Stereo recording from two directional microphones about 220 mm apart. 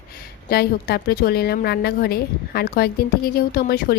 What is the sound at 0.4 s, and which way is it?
A woman's voice, 45° left (ahead or behind).